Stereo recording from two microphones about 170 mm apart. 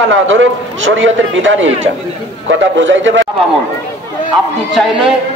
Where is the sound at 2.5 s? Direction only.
90° right.